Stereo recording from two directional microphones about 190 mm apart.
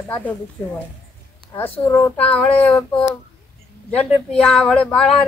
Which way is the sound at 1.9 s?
10° left (ahead or behind).